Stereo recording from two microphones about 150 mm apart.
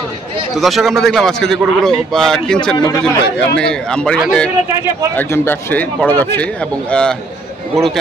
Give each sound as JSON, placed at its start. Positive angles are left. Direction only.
{"t": 0.6, "sound": "a man's voice", "side_deg": 0}
{"t": 5.1, "sound": "a man's voice", "side_deg": 15}